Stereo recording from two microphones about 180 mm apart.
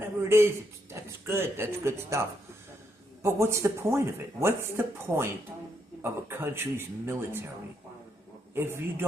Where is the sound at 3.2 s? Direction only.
15° right (ahead or behind).